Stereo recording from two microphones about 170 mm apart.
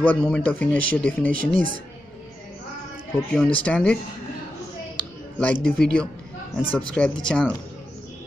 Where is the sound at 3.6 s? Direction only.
5° left (ahead or behind).